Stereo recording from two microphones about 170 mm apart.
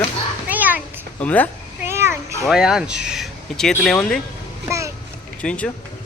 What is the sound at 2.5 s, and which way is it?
Speech, 5° right (ahead or behind).